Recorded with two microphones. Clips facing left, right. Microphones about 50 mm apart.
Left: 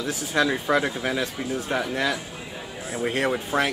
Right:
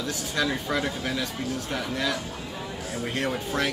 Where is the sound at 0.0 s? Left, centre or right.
Centre.